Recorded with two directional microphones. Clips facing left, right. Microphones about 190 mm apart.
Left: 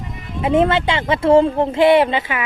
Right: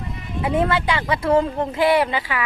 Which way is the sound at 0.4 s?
25° left (ahead or behind).